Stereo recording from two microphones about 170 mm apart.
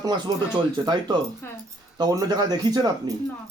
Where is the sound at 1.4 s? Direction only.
15° left (ahead or behind).